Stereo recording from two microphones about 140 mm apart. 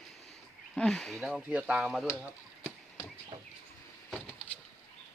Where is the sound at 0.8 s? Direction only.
5° left (ahead or behind).